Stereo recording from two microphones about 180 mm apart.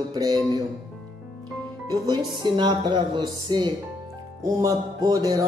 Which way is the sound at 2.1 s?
25° right (ahead or behind).